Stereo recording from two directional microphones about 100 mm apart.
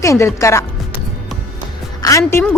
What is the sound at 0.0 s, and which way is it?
Speech, 30° left (ahead or behind).